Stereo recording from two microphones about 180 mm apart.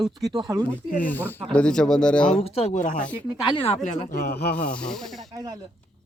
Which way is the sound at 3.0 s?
5° left (ahead or behind).